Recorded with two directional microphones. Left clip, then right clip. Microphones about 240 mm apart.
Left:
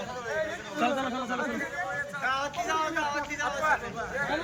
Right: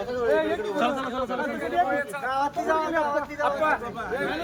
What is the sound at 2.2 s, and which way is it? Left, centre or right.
A man's voice, right.